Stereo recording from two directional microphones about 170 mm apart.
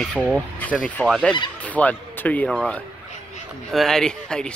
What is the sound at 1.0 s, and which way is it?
Speech, centre (ahead or behind).